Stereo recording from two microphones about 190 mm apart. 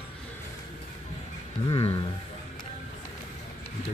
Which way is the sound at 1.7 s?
30° left (ahead or behind).